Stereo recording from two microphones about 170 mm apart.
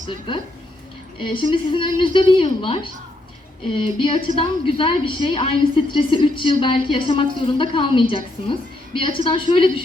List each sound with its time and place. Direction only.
1.2 s a woman's voice: 30° left (ahead or behind)